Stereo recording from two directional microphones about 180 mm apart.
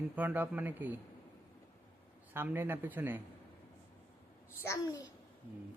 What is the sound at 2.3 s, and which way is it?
Speech, 10° right (ahead or behind).